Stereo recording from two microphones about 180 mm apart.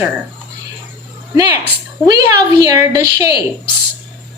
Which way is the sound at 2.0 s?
20° right (ahead or behind).